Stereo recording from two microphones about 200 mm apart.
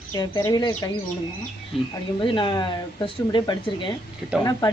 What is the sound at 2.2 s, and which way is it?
Speech, 25° left (ahead or behind).